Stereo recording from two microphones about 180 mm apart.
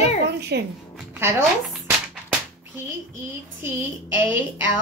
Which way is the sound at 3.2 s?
15° right (ahead or behind).